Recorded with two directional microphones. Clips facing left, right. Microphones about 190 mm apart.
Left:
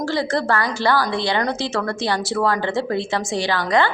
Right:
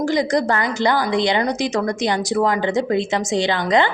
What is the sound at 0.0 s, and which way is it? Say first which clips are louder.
A woman's voice: right 3 dB; 15° right (ahead or behind).